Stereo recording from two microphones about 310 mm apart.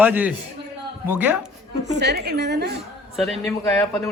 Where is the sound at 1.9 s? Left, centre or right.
Right.